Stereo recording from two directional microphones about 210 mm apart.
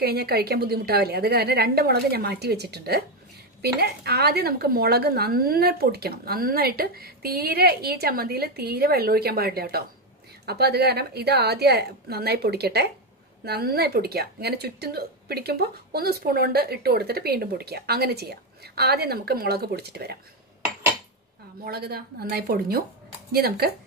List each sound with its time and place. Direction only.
0.0 s speech: 50° right (ahead or behind)
21.6 s speech: 45° right (ahead or behind)